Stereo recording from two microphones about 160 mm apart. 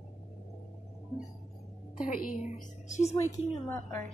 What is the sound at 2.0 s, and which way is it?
Speech, 60° left (ahead or behind).